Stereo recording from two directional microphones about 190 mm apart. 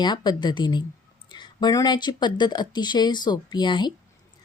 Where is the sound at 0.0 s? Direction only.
25° left (ahead or behind).